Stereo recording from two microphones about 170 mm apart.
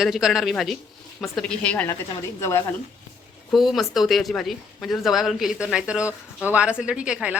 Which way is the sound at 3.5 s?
Centre (ahead or behind).